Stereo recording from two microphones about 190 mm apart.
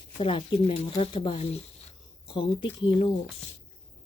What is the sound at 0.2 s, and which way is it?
Speech, 30° left (ahead or behind).